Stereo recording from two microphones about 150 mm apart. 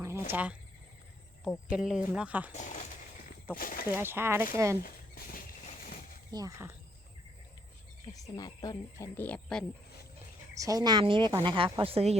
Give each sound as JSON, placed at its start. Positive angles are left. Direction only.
{"t": 0.0, "sound": "cricket", "side_deg": -15}
{"t": 1.7, "sound": "speech", "side_deg": -5}
{"t": 2.5, "sound": "speech", "side_deg": 50}
{"t": 3.6, "sound": "speech", "side_deg": 70}
{"t": 3.9, "sound": "speech", "side_deg": -15}
{"t": 4.8, "sound": "speech", "side_deg": 75}
{"t": 6.3, "sound": "speech", "side_deg": -20}
{"t": 8.4, "sound": "speech", "side_deg": 25}
{"t": 9.1, "sound": "speech", "side_deg": 10}
{"t": 10.5, "sound": "a woman's voice", "side_deg": -25}